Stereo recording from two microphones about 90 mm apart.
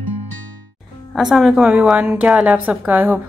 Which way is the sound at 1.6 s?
15° right (ahead or behind).